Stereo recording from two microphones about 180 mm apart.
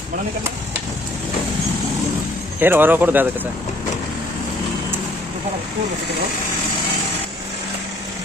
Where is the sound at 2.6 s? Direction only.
10° right (ahead or behind).